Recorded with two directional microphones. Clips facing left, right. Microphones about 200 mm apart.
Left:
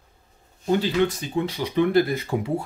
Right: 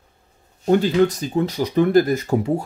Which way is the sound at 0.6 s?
45° right (ahead or behind).